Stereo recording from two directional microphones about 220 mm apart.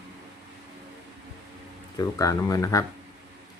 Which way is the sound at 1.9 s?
15° left (ahead or behind).